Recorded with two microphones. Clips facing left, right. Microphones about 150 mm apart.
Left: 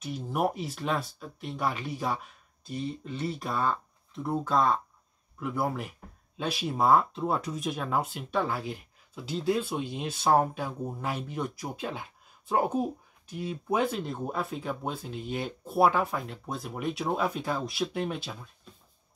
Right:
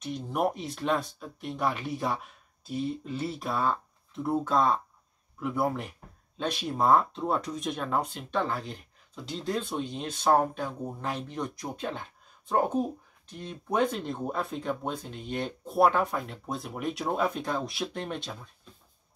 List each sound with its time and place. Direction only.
0.0 s speech: 5° left (ahead or behind)